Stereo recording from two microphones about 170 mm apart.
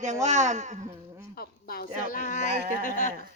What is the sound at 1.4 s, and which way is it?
Speech, 65° left (ahead or behind).